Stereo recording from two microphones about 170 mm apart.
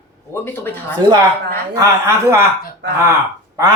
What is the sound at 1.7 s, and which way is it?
Speech, 20° right (ahead or behind).